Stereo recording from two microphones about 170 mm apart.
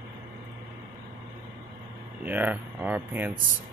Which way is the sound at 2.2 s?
10° right (ahead or behind).